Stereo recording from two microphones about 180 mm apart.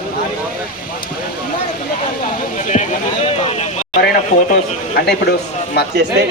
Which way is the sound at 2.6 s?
40° left (ahead or behind).